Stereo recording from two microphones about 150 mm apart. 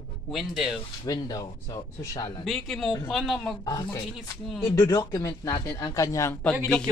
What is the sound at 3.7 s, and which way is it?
Speech, 25° left (ahead or behind).